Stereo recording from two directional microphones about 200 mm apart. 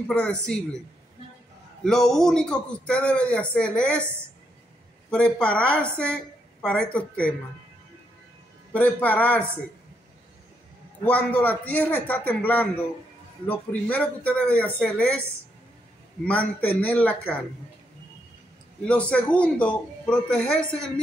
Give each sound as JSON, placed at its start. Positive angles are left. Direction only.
{"t": 0.1, "sound": "a man's voice", "side_deg": 5}
{"t": 1.9, "sound": "a man's voice", "side_deg": 5}
{"t": 5.1, "sound": "speech", "side_deg": 5}
{"t": 8.7, "sound": "speech", "side_deg": 10}
{"t": 11.1, "sound": "speech", "side_deg": 10}
{"t": 16.3, "sound": "speech", "side_deg": 5}
{"t": 18.9, "sound": "speech", "side_deg": 5}